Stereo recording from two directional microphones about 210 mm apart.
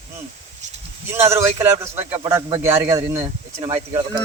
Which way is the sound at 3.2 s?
25° right (ahead or behind).